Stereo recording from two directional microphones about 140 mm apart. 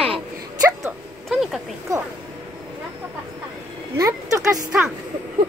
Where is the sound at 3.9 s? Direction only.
20° right (ahead or behind).